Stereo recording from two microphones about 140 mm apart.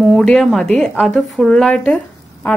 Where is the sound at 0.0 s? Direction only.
5° left (ahead or behind).